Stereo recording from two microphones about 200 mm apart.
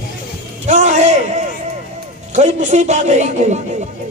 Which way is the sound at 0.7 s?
35° right (ahead or behind).